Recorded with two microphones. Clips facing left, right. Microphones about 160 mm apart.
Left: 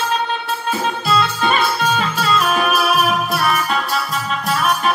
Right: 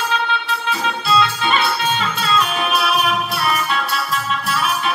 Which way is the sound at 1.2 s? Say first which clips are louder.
Left 1 dB; 45° left (ahead or behind).